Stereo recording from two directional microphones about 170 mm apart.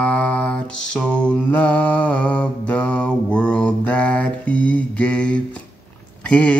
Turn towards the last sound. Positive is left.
turn(degrees=5)  # may be behind; listen again after turning